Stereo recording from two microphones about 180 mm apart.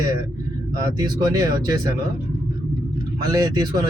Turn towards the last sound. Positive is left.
turn(degrees=-20)  # may be behind; listen again after turning